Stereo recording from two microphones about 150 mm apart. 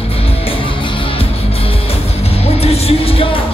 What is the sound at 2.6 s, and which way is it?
Music, 40° left (ahead or behind).